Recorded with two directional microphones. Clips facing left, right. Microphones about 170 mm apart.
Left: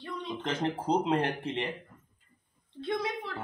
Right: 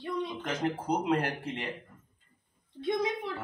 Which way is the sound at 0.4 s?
30° left (ahead or behind).